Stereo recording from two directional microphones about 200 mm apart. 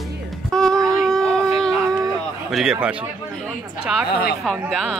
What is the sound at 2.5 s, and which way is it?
Speech, 5° right (ahead or behind).